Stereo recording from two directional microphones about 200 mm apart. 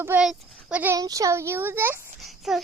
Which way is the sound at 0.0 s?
5° right (ahead or behind).